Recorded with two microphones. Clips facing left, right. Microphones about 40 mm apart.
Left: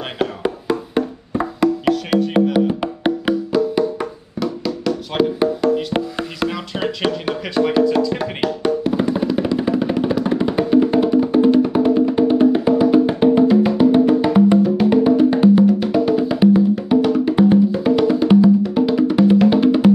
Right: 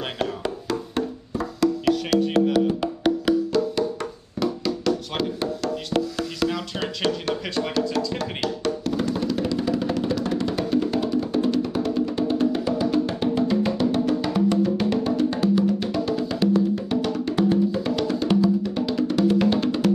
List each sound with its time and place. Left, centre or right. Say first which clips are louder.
0.2 s wood block: left 8 dB; centre
3.5 s music: left 5 dB; centre
4.4 s music: left 2 dB; centre
5.1 s music: left 9 dB; centre
6.5 s music: left 5 dB; centre